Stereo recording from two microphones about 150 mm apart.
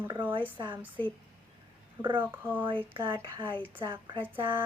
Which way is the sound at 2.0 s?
35° right (ahead or behind).